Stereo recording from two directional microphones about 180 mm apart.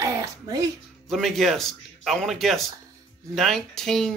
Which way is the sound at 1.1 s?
Centre (ahead or behind).